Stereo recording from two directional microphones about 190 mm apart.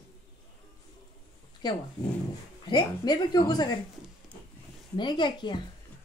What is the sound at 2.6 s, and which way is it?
A woman's voice, 20° left (ahead or behind).